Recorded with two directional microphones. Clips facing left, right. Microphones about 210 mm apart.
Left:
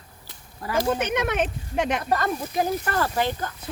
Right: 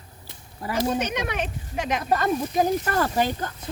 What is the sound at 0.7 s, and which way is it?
Speech, 50° left (ahead or behind).